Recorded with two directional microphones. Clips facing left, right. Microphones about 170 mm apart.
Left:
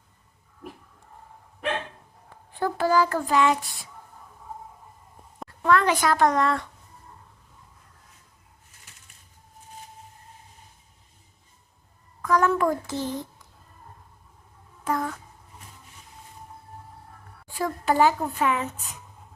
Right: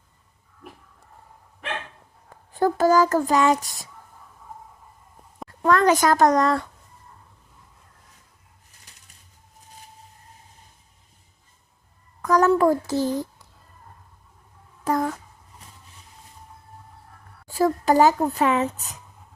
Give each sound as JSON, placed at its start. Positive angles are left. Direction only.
{"t": 2.5, "sound": "speech", "side_deg": -40}
{"t": 5.6, "sound": "a woman's voice", "side_deg": -40}
{"t": 12.2, "sound": "a child's voice", "side_deg": -40}
{"t": 14.8, "sound": "speech", "side_deg": -40}
{"t": 17.5, "sound": "a woman's voice", "side_deg": -40}